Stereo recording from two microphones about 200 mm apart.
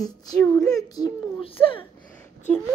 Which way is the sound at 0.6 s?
Centre (ahead or behind).